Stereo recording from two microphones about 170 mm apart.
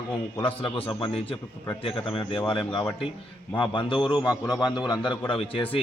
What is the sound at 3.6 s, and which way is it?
Speech, 30° left (ahead or behind).